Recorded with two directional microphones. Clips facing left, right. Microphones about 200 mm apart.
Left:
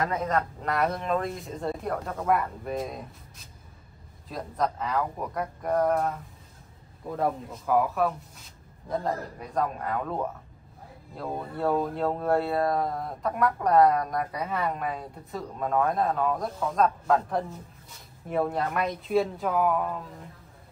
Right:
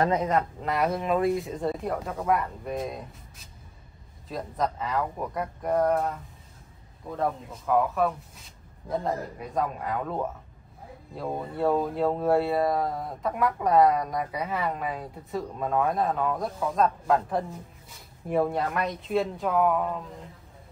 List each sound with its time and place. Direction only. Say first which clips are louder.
0.1 s speech: right 3 dB; 15° right (ahead or behind)
0.6 s speech: right 1 dB; centre (ahead or behind)
4.3 s speech: even; centre (ahead or behind)